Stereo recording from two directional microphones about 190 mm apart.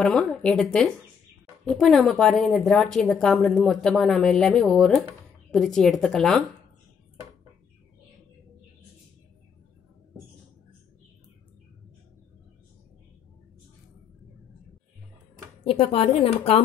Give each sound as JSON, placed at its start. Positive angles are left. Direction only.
{"t": 0.0, "sound": "a woman's voice", "side_deg": 5}
{"t": 15.6, "sound": "a woman's voice", "side_deg": 30}